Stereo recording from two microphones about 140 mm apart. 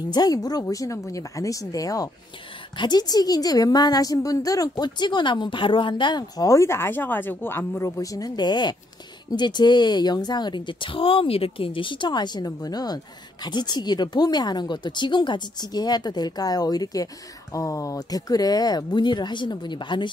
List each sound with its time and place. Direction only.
0.1 s a woman's voice: 30° left (ahead or behind)